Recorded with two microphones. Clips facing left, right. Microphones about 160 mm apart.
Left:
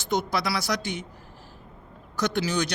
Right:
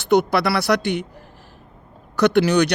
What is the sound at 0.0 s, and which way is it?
Speech, 65° right (ahead or behind).